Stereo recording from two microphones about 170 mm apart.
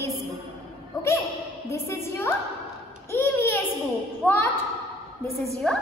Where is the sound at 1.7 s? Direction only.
15° left (ahead or behind).